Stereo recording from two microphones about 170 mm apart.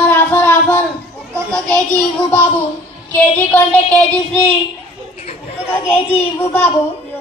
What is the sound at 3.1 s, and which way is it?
Child singing, 10° left (ahead or behind).